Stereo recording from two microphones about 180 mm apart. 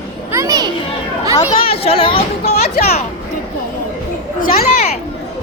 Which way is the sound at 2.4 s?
60° left (ahead or behind).